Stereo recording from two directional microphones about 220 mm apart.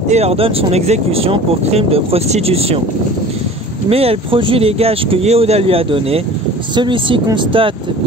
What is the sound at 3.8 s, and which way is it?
Speech, 25° right (ahead or behind).